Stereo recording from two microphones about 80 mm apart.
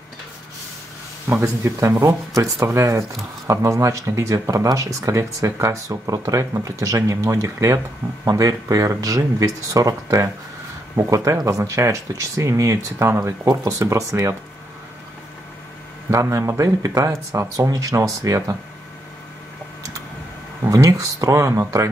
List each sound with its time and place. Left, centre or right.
1.4 s speech: right
16.1 s speech: right
20.7 s speech: right